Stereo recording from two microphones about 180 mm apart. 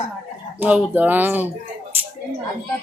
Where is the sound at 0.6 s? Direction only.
10° right (ahead or behind).